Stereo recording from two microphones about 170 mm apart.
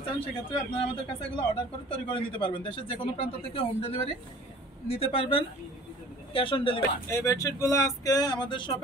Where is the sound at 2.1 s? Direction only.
30° left (ahead or behind).